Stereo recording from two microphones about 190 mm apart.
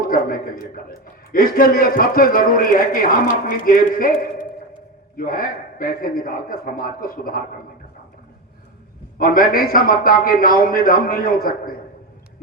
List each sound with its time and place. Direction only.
0.0 s a man's voice: 50° left (ahead or behind)
9.1 s a man's voice: 50° left (ahead or behind)